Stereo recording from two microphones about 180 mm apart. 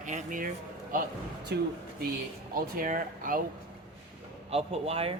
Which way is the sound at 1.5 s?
70° right (ahead or behind).